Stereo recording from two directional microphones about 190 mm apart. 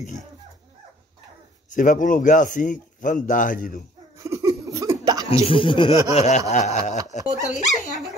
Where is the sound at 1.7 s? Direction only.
40° left (ahead or behind).